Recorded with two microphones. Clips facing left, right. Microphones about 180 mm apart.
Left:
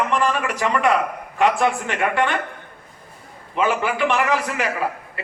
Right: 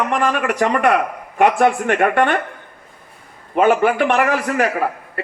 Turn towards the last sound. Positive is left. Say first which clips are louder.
# right 4 dB
turn(degrees=-55)  # may be behind; listen again after turning